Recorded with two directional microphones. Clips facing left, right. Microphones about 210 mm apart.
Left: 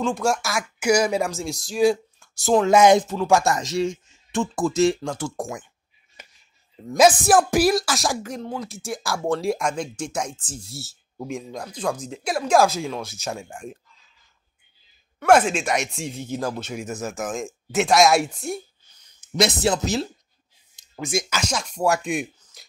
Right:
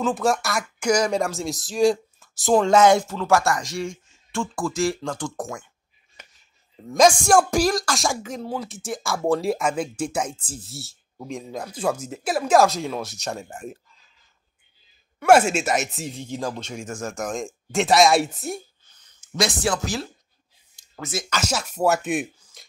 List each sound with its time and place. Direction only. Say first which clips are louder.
0.0 s speech: right 1 dB; centre (ahead or behind)
2.7 s speech: left 3 dB; 15° left (ahead or behind)
5.0 s speech: left 1 dB; 10° left (ahead or behind)
6.9 s speech: even; 5° left (ahead or behind)
15.1 s speech: right 1 dB; 10° right (ahead or behind)
18.9 s speech: left 3 dB; 15° left (ahead or behind)
20.7 s a sound: left 5 dB; 15° left (ahead or behind)
21.5 s speech: right 2 dB; 5° right (ahead or behind)